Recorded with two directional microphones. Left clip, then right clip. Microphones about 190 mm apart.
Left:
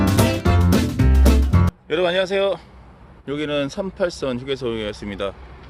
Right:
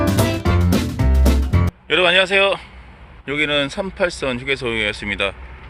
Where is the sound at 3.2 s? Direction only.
15° left (ahead or behind).